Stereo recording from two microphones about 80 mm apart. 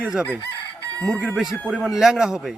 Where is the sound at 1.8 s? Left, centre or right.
Centre.